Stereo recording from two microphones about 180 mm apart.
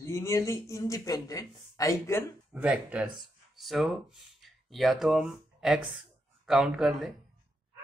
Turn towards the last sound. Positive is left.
turn(degrees=0)  # may be behind; listen again after turning